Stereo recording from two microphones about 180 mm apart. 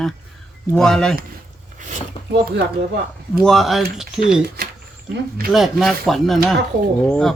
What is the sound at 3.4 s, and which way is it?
Speech, centre (ahead or behind).